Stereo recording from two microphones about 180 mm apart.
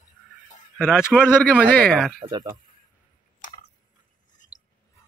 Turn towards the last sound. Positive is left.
turn(degrees=20)  # may be behind; listen again after turning